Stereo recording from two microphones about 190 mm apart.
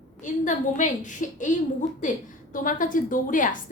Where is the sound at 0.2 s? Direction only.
40° left (ahead or behind).